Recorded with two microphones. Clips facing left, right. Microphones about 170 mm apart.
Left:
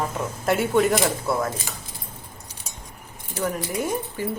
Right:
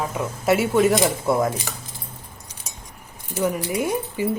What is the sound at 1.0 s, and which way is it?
Speech, 15° right (ahead or behind).